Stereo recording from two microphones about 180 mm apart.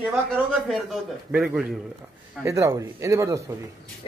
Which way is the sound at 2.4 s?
15° right (ahead or behind).